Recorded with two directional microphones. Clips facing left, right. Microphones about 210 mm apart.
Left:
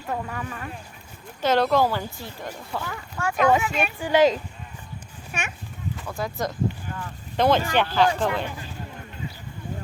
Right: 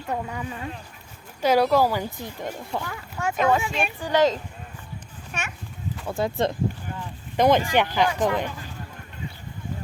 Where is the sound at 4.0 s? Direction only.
15° left (ahead or behind).